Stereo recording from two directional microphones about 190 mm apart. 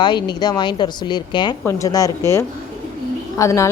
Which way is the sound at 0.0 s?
25° left (ahead or behind).